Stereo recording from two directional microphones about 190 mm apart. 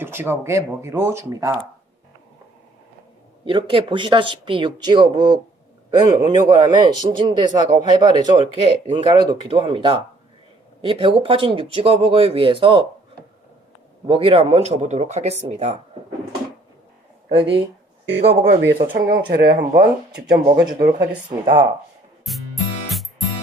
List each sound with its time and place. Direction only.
0.0 s speech: 10° right (ahead or behind)
3.4 s a man's voice: 25° right (ahead or behind)
14.1 s speech: 30° right (ahead or behind)
17.2 s speech: 30° right (ahead or behind)
18.5 s speech: 60° right (ahead or behind)
21.2 s a man's voice: 25° right (ahead or behind)